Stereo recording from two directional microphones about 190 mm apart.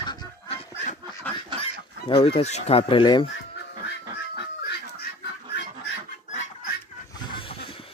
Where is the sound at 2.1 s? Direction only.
30° left (ahead or behind).